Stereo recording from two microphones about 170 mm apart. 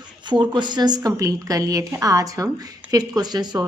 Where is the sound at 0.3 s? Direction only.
25° right (ahead or behind).